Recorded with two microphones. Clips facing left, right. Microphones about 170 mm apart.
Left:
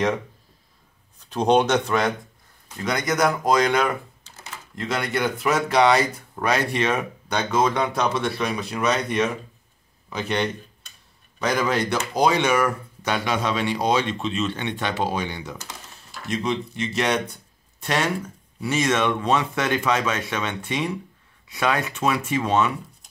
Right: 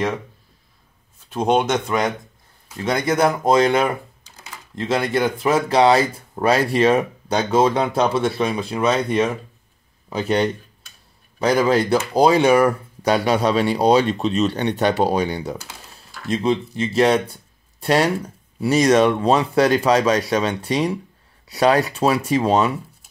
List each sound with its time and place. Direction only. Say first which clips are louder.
1.3 s speech: even; 10° right (ahead or behind)
2.8 s a man's voice: right 4 dB; 30° right (ahead or behind)